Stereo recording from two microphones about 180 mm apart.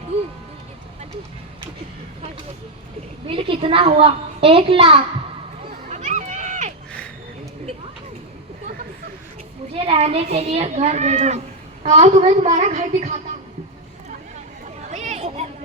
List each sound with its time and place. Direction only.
3.2 s a child's voice: 30° right (ahead or behind)
5.9 s run: 40° right (ahead or behind)
9.7 s a woman's voice: 30° right (ahead or behind)
14.8 s a sound: 40° right (ahead or behind)